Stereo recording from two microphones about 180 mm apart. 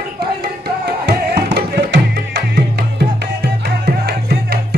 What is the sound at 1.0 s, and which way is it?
Music, 65° right (ahead or behind).